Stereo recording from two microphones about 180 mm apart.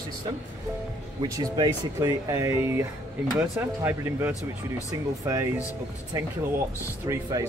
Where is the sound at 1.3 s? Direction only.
20° right (ahead or behind).